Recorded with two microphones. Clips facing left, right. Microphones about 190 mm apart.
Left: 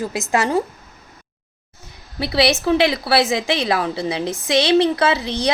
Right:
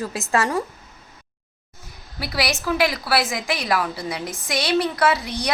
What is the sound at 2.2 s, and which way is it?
A woman's voice, 25° left (ahead or behind).